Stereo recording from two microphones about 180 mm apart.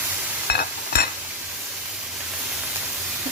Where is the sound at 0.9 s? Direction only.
65° left (ahead or behind).